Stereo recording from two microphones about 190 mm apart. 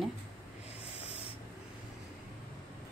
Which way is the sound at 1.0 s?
30° left (ahead or behind).